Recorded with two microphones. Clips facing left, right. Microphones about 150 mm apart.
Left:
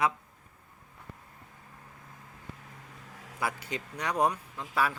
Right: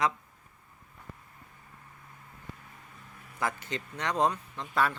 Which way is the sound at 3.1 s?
90° left.